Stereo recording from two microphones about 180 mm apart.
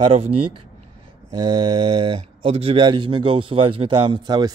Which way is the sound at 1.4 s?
25° right (ahead or behind).